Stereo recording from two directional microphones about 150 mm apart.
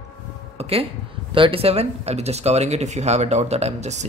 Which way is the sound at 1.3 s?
35° right (ahead or behind).